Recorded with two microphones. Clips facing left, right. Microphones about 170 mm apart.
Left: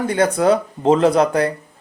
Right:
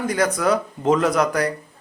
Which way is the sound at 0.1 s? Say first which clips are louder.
Left 5 dB; 30° left (ahead or behind).